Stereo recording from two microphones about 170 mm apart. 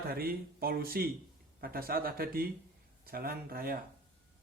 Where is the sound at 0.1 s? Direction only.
60° right (ahead or behind).